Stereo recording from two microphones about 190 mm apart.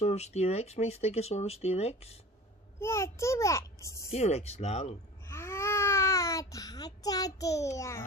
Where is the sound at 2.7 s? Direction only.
15° left (ahead or behind).